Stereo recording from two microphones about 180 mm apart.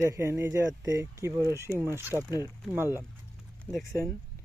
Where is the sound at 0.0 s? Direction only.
15° right (ahead or behind).